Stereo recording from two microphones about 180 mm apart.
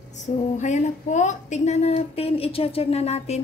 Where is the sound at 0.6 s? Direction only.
40° left (ahead or behind).